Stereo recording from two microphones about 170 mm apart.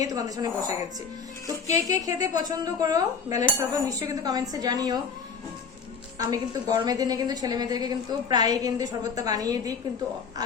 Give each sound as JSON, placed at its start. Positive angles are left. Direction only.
{"t": 0.0, "sound": "a woman's voice", "side_deg": -20}
{"t": 1.9, "sound": "a woman's voice", "side_deg": -20}
{"t": 6.1, "sound": "a woman's voice", "side_deg": -20}